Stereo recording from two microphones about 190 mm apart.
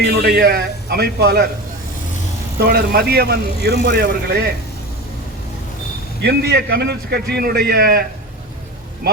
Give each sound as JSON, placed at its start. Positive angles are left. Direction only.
{"t": 0.2, "sound": "a man's voice", "side_deg": -50}
{"t": 2.6, "sound": "speech", "side_deg": -55}
{"t": 6.2, "sound": "speech", "side_deg": -60}